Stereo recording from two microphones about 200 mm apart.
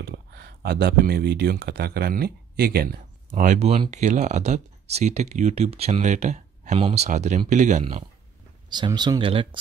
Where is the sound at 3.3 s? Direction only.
40° right (ahead or behind).